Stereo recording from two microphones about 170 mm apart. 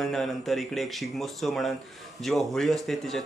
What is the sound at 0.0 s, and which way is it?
Speech, centre (ahead or behind).